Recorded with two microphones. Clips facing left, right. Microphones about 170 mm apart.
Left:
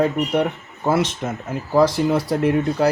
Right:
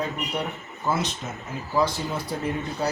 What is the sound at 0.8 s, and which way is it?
Speech, 85° left.